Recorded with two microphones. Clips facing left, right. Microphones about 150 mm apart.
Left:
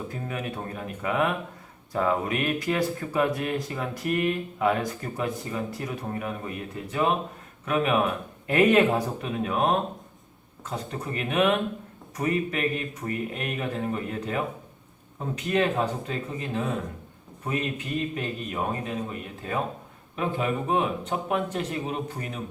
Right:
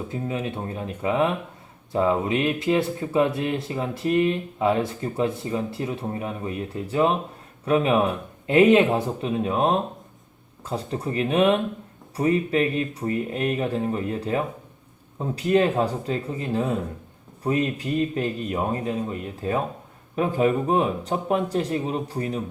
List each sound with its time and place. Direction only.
0.1 s speech: 25° right (ahead or behind)
10.7 s speech: 30° right (ahead or behind)
20.1 s speech: 40° right (ahead or behind)